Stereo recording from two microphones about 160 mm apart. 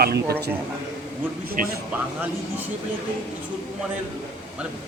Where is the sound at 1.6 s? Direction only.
60° right (ahead or behind).